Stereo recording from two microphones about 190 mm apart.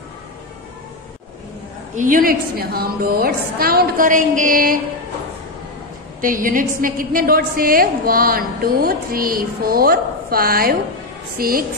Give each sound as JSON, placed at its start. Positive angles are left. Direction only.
{"t": 2.0, "sound": "a woman's voice", "side_deg": -45}
{"t": 6.2, "sound": "a woman's voice", "side_deg": -45}